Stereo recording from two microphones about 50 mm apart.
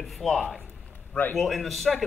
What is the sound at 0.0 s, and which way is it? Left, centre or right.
A man's voice, centre.